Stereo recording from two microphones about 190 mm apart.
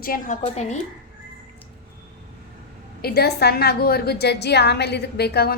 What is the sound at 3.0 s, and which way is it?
A woman's voice, 55° left (ahead or behind).